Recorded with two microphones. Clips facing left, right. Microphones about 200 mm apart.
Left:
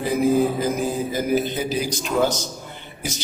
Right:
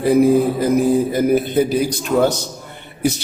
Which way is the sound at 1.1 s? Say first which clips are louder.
Right 6 dB; 55° right (ahead or behind).